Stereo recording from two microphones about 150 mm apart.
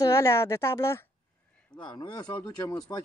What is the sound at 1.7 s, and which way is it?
Speech, 30° left (ahead or behind).